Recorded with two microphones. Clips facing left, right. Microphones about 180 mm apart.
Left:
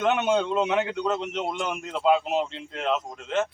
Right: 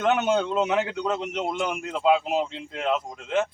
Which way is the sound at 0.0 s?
5° right (ahead or behind).